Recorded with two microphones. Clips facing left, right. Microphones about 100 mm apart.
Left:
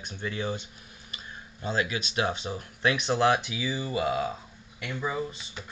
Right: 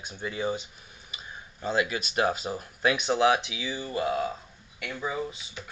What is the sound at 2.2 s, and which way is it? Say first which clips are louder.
Speech: right 3 dB; 5° right (ahead or behind).